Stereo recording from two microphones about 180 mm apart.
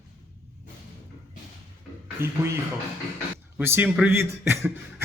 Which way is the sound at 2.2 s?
15° right (ahead or behind).